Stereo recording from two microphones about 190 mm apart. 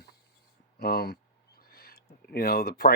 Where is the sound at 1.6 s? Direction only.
55° left (ahead or behind).